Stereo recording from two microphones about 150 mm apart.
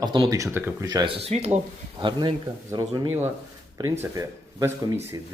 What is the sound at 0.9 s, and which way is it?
Speech, 35° right (ahead or behind).